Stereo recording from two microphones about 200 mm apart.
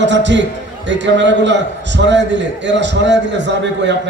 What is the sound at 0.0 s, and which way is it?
A man's voice, 65° right (ahead or behind).